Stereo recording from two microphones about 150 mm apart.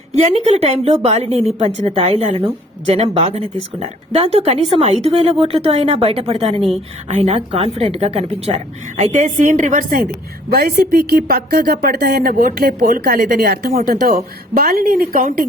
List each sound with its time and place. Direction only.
0.1 s a woman's voice: 50° right (ahead or behind); by 10.1 s 70° right (ahead or behind)
10.5 s a woman's voice: 85° right; by 15.4 s 70° right (ahead or behind)